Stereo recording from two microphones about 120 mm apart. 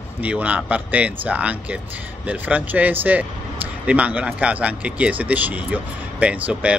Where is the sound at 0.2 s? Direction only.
10° right (ahead or behind).